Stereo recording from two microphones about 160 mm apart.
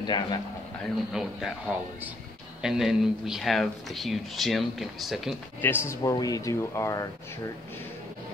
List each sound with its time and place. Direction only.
0.0 s speech: 30° left (ahead or behind)
1.1 s speech: centre (ahead or behind)
2.6 s speech: centre (ahead or behind)
5.6 s speech: 15° left (ahead or behind)